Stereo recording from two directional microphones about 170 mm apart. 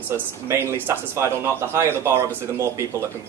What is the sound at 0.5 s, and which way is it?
A man's voice, 15° right (ahead or behind).